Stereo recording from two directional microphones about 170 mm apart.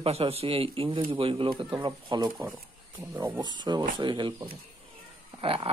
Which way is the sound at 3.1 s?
10° right (ahead or behind).